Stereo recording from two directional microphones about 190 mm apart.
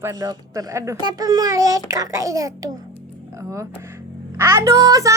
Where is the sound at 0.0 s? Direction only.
20° right (ahead or behind).